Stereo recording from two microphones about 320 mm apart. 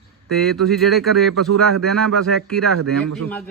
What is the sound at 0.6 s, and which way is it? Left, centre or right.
A man's voice, centre.